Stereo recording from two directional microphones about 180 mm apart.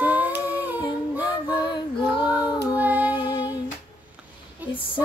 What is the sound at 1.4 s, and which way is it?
Child singing, 25° left (ahead or behind).